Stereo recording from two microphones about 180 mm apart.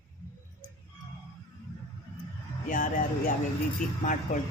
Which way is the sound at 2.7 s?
45° left (ahead or behind).